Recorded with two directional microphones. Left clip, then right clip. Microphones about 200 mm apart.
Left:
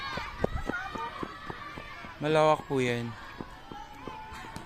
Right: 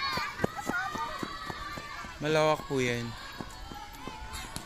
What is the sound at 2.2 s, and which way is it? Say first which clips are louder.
Speech: left 2 dB; 5° left (ahead or behind).